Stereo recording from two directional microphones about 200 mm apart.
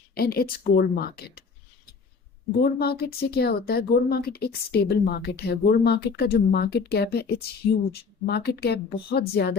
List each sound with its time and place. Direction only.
0.1 s speech: 50° left (ahead or behind)
2.6 s speech: 50° left (ahead or behind)